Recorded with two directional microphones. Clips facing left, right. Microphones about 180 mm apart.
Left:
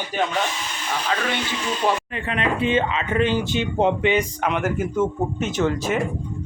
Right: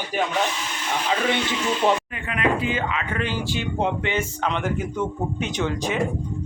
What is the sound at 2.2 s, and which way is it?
Speech, 30° left (ahead or behind).